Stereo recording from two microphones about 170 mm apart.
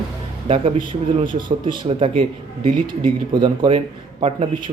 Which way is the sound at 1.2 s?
30° right (ahead or behind).